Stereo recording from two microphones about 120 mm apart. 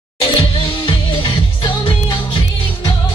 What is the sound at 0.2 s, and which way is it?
Music, 45° left (ahead or behind).